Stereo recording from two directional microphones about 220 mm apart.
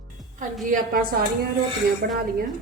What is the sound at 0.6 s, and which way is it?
Speech, 40° right (ahead or behind).